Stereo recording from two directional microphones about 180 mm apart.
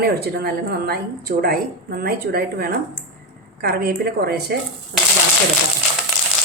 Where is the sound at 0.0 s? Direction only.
60° right (ahead or behind).